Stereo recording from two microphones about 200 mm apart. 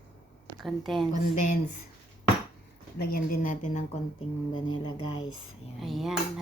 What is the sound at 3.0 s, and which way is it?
Speech, 50° left (ahead or behind).